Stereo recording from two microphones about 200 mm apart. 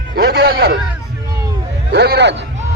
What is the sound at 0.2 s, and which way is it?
Speech, 55° right (ahead or behind).